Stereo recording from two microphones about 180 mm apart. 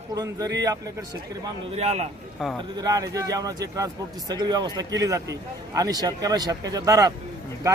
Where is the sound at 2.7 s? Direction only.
20° right (ahead or behind).